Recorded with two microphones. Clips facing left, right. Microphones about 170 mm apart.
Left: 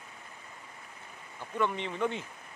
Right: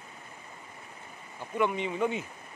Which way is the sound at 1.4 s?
10° right (ahead or behind).